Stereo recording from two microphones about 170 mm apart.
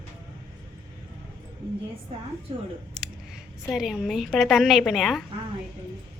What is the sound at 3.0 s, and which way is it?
Speech, centre (ahead or behind).